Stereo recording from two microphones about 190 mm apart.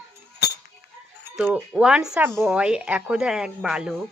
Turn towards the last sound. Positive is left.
turn(degrees=-5)  # may be behind; listen again after turning